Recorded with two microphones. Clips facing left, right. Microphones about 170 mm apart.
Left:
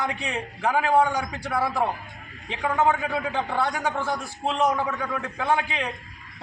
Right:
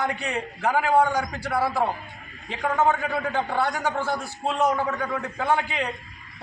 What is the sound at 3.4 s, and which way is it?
Speech, 10° right (ahead or behind).